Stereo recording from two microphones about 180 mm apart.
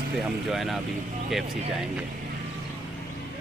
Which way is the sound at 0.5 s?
Centre (ahead or behind).